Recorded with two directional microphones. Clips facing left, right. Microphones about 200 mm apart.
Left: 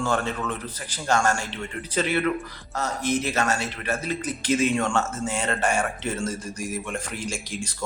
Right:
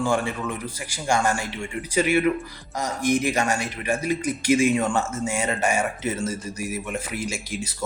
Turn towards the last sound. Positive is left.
turn(degrees=-5)  # may be behind; listen again after turning